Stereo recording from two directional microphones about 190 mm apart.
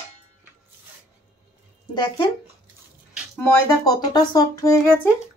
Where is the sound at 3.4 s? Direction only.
20° left (ahead or behind).